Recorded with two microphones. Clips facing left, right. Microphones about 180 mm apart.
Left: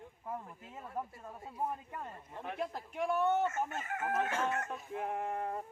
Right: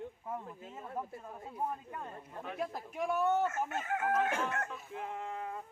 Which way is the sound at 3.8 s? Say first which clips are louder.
Right 6 dB; 60° right (ahead or behind).